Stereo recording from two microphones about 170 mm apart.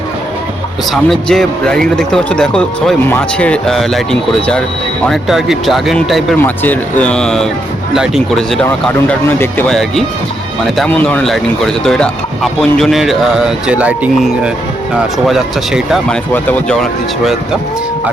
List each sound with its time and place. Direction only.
0.9 s speech: centre (ahead or behind)
6.3 s speech: 10° left (ahead or behind)
8.6 s speech: 15° left (ahead or behind)